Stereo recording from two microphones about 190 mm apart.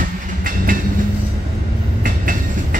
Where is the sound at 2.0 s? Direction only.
45° right (ahead or behind).